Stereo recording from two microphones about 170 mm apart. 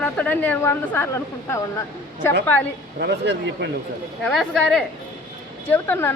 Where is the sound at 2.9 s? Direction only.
80° right.